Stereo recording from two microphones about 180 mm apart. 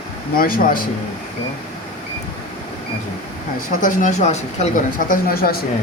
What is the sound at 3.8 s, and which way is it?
Speech, 45° left (ahead or behind).